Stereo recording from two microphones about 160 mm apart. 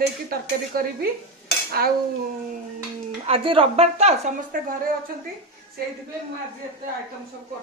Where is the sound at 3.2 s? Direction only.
35° right (ahead or behind).